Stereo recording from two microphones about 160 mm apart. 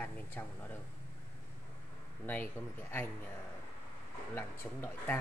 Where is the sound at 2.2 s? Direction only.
10° left (ahead or behind).